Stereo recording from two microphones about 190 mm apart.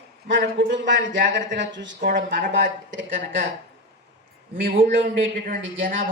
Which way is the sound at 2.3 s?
45° right (ahead or behind).